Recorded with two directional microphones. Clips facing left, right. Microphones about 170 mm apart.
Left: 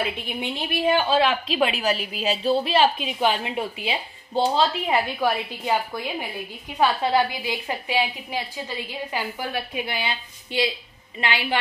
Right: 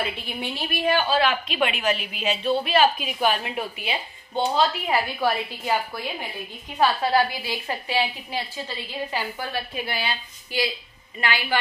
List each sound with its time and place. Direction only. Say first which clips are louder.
0.0 s a woman's voice: left 2 dB; 15° left (ahead or behind)